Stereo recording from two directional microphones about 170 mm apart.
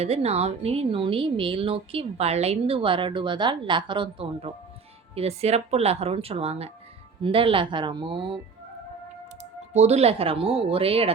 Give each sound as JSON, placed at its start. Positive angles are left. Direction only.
{"t": 0.0, "sound": "speech", "side_deg": -35}
{"t": 9.4, "sound": "speech", "side_deg": -40}